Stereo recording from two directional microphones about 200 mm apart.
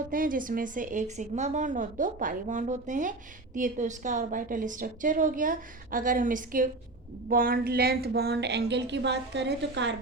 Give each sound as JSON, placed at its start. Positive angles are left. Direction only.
{"t": 0.1, "sound": "a woman's voice", "side_deg": -45}